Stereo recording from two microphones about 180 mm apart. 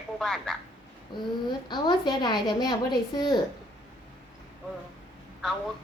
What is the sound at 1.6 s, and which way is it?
A woman's voice, 25° left (ahead or behind).